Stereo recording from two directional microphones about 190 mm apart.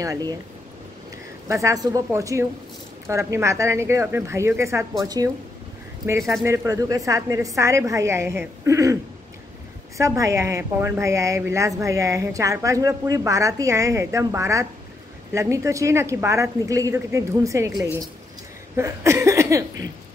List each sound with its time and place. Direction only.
0.0 s speech: 20° right (ahead or behind)
1.5 s a woman's voice: 15° right (ahead or behind)
9.9 s a woman's voice: 15° right (ahead or behind)